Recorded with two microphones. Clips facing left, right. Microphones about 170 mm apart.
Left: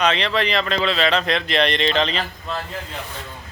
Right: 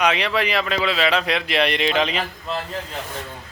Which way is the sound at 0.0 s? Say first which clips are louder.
Even; 10° right (ahead or behind).